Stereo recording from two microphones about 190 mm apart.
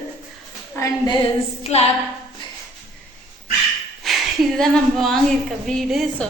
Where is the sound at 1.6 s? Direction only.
35° left (ahead or behind).